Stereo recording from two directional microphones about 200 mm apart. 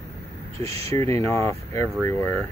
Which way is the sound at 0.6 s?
15° left (ahead or behind).